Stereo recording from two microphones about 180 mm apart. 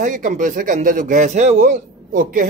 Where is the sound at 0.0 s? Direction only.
45° right (ahead or behind).